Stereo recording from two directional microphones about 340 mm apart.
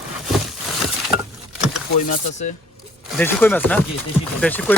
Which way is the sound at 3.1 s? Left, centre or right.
Centre.